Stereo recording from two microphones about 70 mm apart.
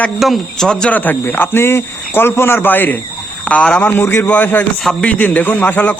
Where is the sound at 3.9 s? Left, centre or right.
Left.